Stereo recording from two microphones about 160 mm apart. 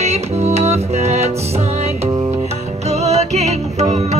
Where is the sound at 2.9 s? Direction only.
45° right (ahead or behind).